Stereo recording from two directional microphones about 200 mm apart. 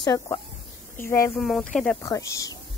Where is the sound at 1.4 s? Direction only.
Centre (ahead or behind).